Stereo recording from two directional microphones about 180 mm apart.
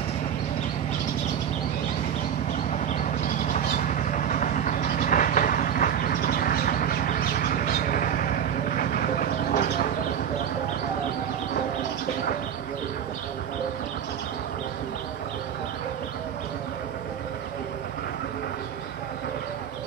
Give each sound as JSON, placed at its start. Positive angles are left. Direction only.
{"t": 3.3, "sound": "vehicle", "side_deg": 45}